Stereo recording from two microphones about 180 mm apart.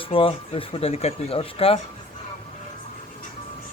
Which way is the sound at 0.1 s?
30° left (ahead or behind).